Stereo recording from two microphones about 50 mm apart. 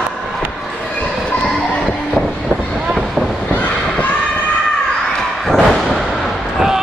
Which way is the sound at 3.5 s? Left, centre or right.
Left.